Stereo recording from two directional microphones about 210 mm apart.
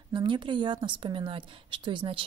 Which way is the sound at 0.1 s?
20° right (ahead or behind).